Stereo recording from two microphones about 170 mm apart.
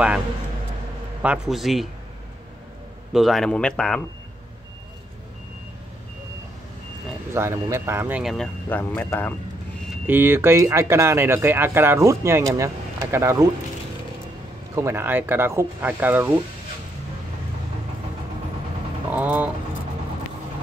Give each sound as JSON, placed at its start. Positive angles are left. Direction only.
{"t": 1.2, "sound": "speech", "side_deg": -5}
{"t": 3.1, "sound": "speech", "side_deg": 0}
{"t": 7.3, "sound": "speech", "side_deg": -15}
{"t": 8.2, "sound": "speech", "side_deg": 0}
{"t": 8.6, "sound": "speech", "side_deg": 10}
{"t": 10.0, "sound": "speech", "side_deg": -10}
{"t": 14.8, "sound": "speech", "side_deg": -15}
{"t": 19.1, "sound": "speech", "side_deg": -10}